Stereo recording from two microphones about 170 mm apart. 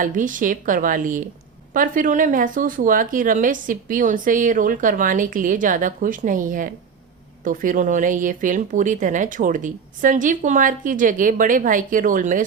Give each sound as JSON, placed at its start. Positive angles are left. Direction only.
{"t": 0.0, "sound": "speech", "side_deg": -50}